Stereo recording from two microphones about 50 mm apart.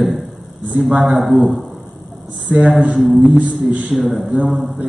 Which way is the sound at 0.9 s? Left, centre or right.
Centre.